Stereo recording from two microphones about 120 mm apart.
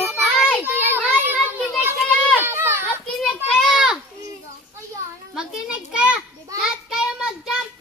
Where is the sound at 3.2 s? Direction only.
5° right (ahead or behind).